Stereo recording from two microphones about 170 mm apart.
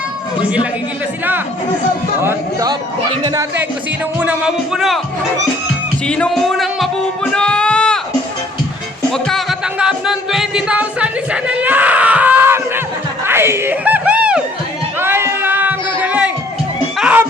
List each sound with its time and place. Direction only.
2.2 s a man's voice: 20° right (ahead or behind)
4.2 s speech: 5° right (ahead or behind)
6.1 s music: 5° left (ahead or behind)
9.1 s music: 5° left (ahead or behind); by 12.8 s 15° right (ahead or behind)
13.2 s a sound: 15° right (ahead or behind)